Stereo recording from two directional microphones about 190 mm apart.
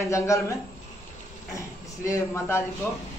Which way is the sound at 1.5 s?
15° left (ahead or behind).